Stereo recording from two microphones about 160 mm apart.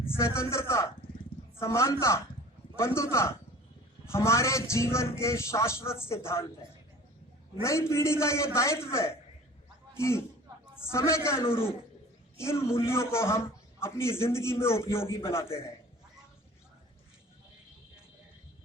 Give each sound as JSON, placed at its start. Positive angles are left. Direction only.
{"t": 0.3, "sound": "a man's voice", "side_deg": 15}
{"t": 7.6, "sound": "a man's voice", "side_deg": 15}